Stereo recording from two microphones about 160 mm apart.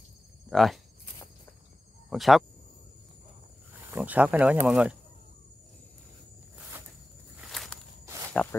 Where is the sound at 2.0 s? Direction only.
Centre (ahead or behind).